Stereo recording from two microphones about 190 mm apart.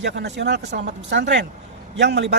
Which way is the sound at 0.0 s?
65° right (ahead or behind).